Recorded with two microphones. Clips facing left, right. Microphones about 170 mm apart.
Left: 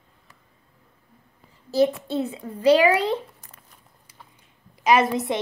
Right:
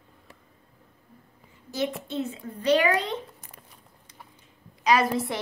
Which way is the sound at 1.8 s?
35° left (ahead or behind).